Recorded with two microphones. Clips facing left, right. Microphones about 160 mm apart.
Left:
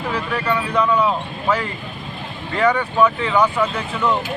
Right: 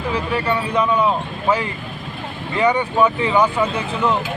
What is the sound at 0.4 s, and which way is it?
Speech, 25° right (ahead or behind).